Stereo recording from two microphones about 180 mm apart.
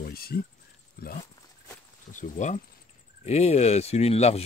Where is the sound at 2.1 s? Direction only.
45° left (ahead or behind).